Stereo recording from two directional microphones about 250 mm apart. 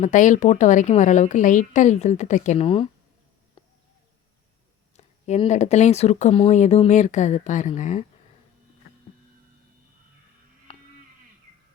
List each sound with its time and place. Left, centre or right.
0.0 s speech: left
3.6 s bird: left
4.9 s speech: left
10.7 s a sound: left